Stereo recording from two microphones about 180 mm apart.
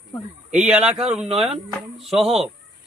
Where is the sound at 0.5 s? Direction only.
5° right (ahead or behind).